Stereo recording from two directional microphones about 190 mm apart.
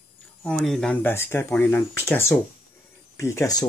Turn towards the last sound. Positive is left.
turn(degrees=15)  # may be behind; listen again after turning